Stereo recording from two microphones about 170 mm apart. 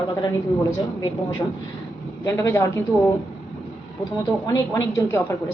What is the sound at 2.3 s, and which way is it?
Speech, 15° left (ahead or behind).